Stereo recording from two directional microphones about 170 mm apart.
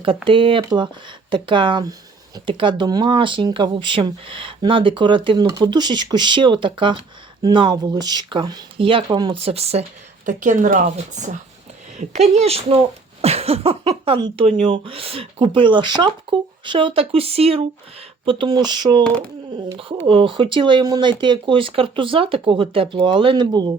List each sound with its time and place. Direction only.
0.3 s speech: 30° right (ahead or behind)
9.4 s speech: 35° right (ahead or behind)
20.1 s speech: 30° right (ahead or behind)